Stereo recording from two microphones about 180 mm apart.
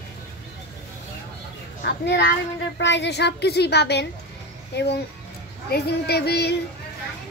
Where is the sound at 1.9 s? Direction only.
70° left (ahead or behind).